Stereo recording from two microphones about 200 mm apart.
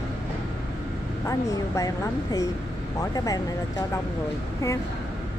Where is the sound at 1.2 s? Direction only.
15° left (ahead or behind).